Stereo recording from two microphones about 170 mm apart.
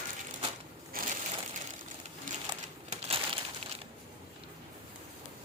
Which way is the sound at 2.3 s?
50° right (ahead or behind).